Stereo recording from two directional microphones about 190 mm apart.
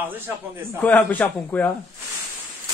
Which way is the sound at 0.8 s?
10° left (ahead or behind).